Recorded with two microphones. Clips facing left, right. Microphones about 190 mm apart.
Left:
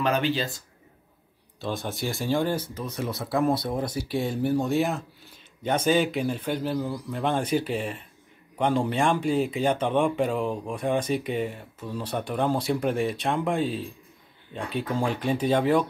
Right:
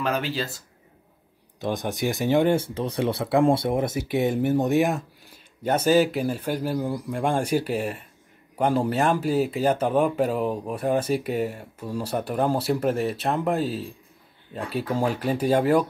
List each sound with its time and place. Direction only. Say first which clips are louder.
0.0 s speech: left 2 dB; 5° right (ahead or behind)
1.6 s speech: right 4 dB; 15° right (ahead or behind)